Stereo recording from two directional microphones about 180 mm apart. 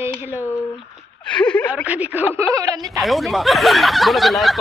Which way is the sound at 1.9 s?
10° right (ahead or behind).